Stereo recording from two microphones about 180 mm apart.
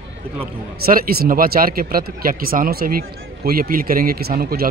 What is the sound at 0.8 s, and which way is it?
Speech, 55° right (ahead or behind).